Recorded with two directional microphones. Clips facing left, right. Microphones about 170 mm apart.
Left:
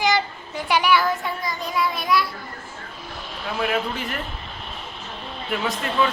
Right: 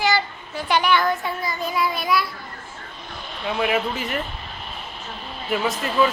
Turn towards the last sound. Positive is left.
turn(degrees=0)  # may be behind; listen again after turning